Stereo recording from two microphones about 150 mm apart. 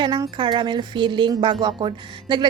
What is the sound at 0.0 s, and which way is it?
A woman's voice, 30° right (ahead or behind).